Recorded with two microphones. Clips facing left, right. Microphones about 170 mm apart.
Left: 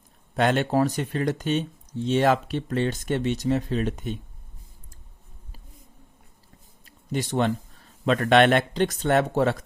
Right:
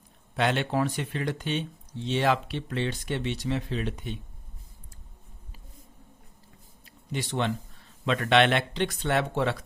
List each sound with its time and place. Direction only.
0.3 s speech: 45° left (ahead or behind)
6.8 s speech: 45° left (ahead or behind)